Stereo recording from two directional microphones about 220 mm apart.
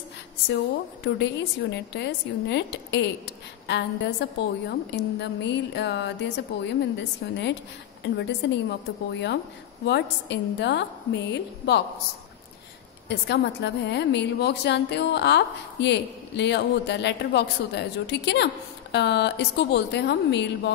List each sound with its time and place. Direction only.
1.0 s a woman's voice: 50° left (ahead or behind)
13.1 s a woman's voice: 50° left (ahead or behind)